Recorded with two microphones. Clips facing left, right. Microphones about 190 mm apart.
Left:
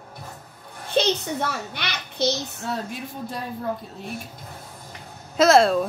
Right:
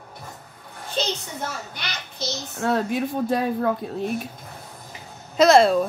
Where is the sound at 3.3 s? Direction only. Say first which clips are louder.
Right 6 dB; 70° right (ahead or behind).